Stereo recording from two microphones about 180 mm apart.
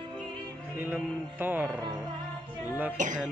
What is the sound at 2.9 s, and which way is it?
Music, 45° right (ahead or behind).